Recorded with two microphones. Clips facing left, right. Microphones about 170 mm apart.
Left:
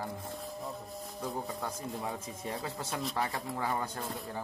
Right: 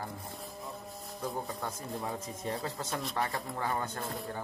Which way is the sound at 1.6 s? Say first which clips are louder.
Even; 10° left (ahead or behind).